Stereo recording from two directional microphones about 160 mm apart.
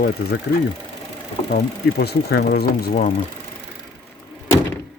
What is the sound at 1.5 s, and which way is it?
Speech, 80° left.